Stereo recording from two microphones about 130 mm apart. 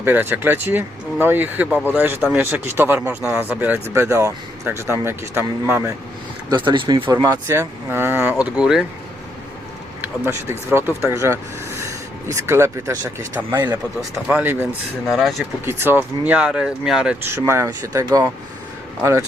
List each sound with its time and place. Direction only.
0.0 s speech: 15° right (ahead or behind)
6.6 s speech: 40° right (ahead or behind); by 8.8 s 5° right (ahead or behind)
10.0 s speech: 20° right (ahead or behind)
15.0 s speech: centre (ahead or behind)
15.6 s speech: 15° right (ahead or behind)
17.2 s speech: 20° right (ahead or behind)